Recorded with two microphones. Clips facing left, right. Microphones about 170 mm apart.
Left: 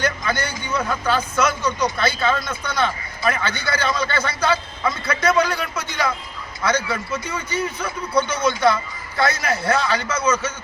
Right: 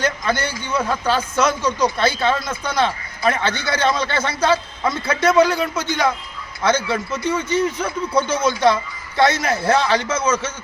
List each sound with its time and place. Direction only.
0.0 s a man's voice: 25° right (ahead or behind)